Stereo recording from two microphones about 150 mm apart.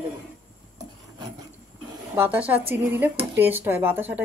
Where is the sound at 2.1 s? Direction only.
15° right (ahead or behind).